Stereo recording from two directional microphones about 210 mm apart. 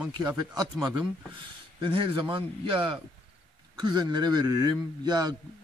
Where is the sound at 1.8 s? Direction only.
25° right (ahead or behind).